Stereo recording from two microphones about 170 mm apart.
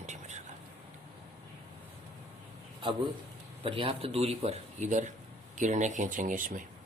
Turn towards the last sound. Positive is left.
turn(degrees=-50)  # may be behind; listen again after turning